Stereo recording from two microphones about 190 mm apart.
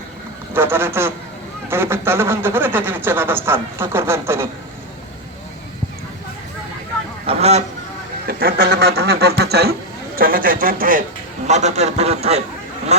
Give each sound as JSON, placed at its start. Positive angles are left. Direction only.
{"t": 0.5, "sound": "a man's voice", "side_deg": -10}
{"t": 7.3, "sound": "goose", "side_deg": -35}
{"t": 8.3, "sound": "speech", "side_deg": -55}
{"t": 11.4, "sound": "a man's voice", "side_deg": -35}